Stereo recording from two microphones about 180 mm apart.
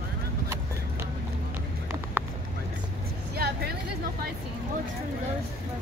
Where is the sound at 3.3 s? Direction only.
60° right (ahead or behind).